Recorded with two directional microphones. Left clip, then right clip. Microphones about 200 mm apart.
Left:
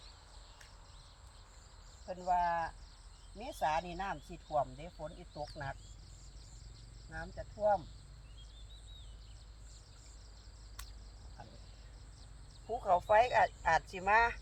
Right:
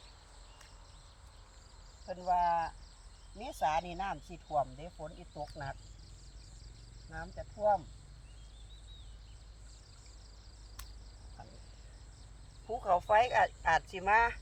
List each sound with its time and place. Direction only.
2.0 s speech: 20° right (ahead or behind)
7.1 s speech: 20° right (ahead or behind)
12.6 s speech: 15° right (ahead or behind)